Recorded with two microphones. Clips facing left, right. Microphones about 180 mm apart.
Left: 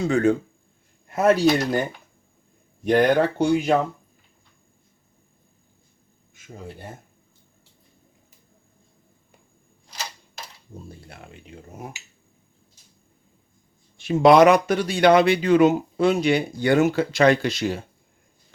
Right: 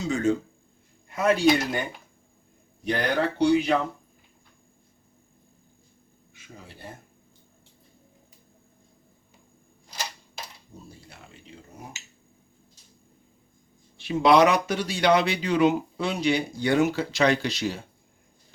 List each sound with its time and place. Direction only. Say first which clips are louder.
0.0 s speech: left 5 dB; 60° left (ahead or behind)
1.0 s speech: left 3 dB; 45° left (ahead or behind)
10.8 s a sound: left 5 dB; 55° left (ahead or behind)
14.0 s speech: left 5 dB; 50° left (ahead or behind)